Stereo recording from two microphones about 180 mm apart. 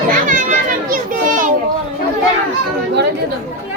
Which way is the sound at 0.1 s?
45° right (ahead or behind).